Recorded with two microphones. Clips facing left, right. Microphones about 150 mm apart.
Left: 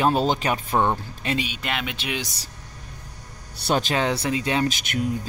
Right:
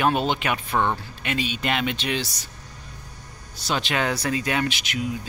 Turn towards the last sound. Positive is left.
turn(degrees=45)  # may be behind; listen again after turning